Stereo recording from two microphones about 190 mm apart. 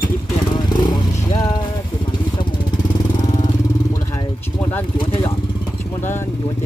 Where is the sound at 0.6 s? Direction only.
20° left (ahead or behind).